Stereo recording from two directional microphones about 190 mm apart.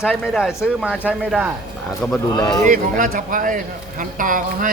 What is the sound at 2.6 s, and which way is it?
Speech, 45° right (ahead or behind).